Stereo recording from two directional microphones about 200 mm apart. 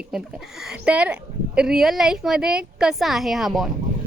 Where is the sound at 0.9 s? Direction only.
5° right (ahead or behind).